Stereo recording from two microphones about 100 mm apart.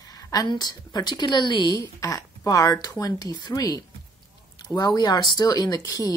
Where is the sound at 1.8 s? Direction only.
35° left (ahead or behind).